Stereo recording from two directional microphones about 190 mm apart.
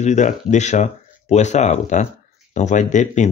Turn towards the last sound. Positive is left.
turn(degrees=40)  # may be behind; listen again after turning